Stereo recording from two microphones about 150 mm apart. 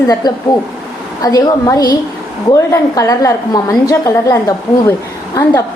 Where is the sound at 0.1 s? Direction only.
30° left (ahead or behind).